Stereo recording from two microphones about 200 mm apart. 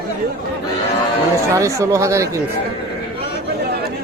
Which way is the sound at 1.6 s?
15° right (ahead or behind).